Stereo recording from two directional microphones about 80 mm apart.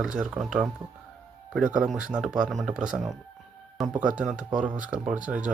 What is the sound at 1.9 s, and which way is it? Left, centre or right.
Speech, centre.